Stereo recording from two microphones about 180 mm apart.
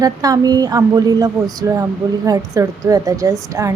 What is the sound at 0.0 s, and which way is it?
A woman's voice, 20° right (ahead or behind).